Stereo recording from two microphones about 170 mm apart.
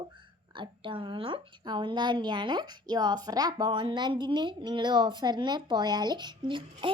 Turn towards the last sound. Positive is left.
turn(degrees=-30)  # may be behind; listen again after turning